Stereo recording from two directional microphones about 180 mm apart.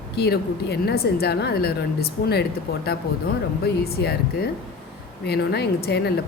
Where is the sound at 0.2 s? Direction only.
65° left (ahead or behind).